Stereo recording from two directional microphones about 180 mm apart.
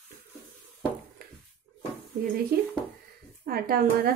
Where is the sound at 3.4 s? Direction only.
60° right (ahead or behind).